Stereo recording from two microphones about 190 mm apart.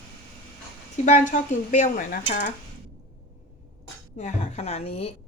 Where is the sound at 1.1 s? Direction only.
40° left (ahead or behind).